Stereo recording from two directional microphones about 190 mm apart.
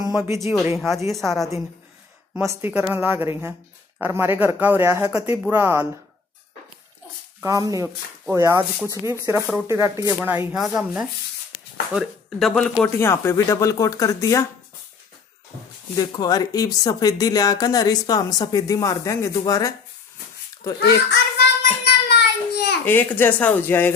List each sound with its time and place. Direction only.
0.1 s speech: 10° right (ahead or behind)
0.4 s speech: centre (ahead or behind)
2.3 s speech: 15° right (ahead or behind)
7.4 s speech: 15° right (ahead or behind); by 12.7 s centre (ahead or behind)
12.8 s speech: 15° left (ahead or behind)
16.0 s speech: 20° left (ahead or behind)
20.8 s a sound: 60° left (ahead or behind)
22.8 s speech: 10° left (ahead or behind)